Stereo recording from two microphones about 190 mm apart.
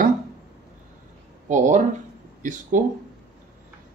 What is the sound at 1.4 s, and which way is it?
Speech, 40° right (ahead or behind).